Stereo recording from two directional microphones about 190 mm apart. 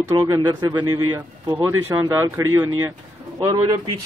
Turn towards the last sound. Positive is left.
turn(degrees=-20)  # may be behind; listen again after turning